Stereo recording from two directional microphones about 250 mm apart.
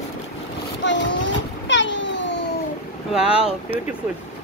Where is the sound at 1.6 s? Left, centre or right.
Left.